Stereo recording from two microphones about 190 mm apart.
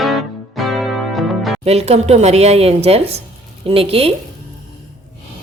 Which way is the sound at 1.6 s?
35° right (ahead or behind).